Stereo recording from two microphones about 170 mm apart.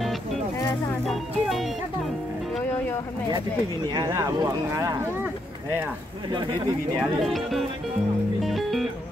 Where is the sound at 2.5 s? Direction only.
10° left (ahead or behind).